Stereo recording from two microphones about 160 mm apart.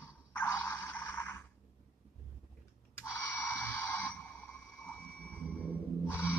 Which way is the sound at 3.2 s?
15° left (ahead or behind).